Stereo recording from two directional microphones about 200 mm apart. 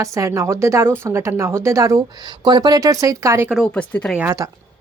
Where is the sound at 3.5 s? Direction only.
5° left (ahead or behind).